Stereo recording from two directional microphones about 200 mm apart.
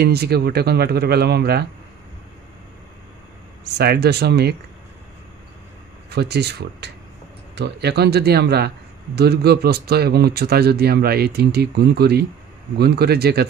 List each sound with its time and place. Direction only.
0.0 s speech: 55° right (ahead or behind)
3.6 s speech: 55° right (ahead or behind)
6.0 s speech: 55° right (ahead or behind)